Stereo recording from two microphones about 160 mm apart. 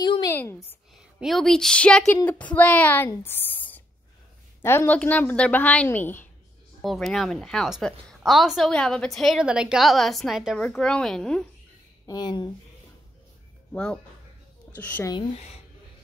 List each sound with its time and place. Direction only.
0.0 s a sound: 25° left (ahead or behind)
0.3 s a woman's voice: 15° left (ahead or behind)
1.2 s a woman's voice: centre (ahead or behind)
6.8 s a woman's voice: centre (ahead or behind)
12.1 s speech: 25° left (ahead or behind)
14.8 s a woman's voice: 10° left (ahead or behind)